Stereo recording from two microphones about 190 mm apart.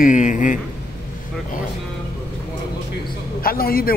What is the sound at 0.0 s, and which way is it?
Speech, 40° left (ahead or behind).